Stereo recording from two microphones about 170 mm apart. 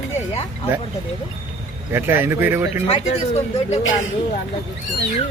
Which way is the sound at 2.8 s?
35° left (ahead or behind).